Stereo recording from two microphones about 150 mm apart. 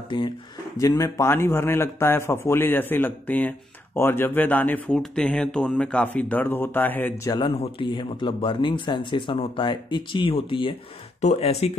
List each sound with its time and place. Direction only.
0.1 s a man's voice: 30° left (ahead or behind); by 7.2 s 10° left (ahead or behind)
7.2 s speech: 30° left (ahead or behind)
11.1 s speech: 45° left (ahead or behind)